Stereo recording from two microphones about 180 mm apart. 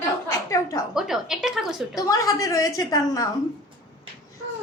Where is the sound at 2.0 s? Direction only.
20° left (ahead or behind).